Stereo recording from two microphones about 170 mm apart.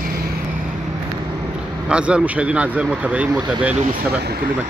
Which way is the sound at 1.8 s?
5° right (ahead or behind).